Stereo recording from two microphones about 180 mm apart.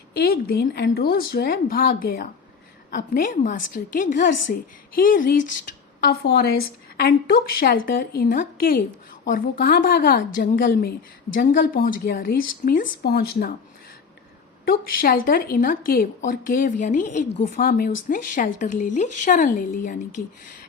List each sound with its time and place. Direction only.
0.1 s a woman's voice: 55° left (ahead or behind)
6.0 s a woman's voice: 65° left (ahead or behind)
14.6 s a woman's voice: 55° left (ahead or behind)